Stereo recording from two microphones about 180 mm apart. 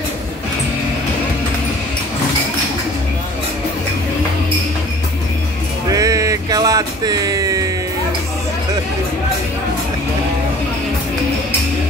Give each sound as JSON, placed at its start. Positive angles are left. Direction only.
{"t": 5.9, "sound": "music", "side_deg": -20}